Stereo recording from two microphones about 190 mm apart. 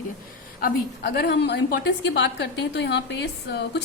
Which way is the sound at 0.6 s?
60° left (ahead or behind).